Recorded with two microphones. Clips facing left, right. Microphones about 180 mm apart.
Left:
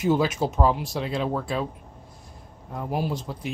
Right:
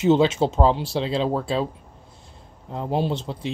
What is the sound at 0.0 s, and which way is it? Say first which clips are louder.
Speech: right 5 dB; 25° right (ahead or behind).